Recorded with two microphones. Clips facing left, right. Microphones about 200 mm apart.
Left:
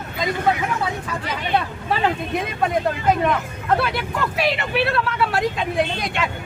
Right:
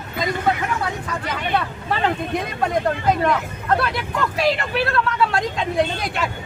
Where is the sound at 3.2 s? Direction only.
5° left (ahead or behind).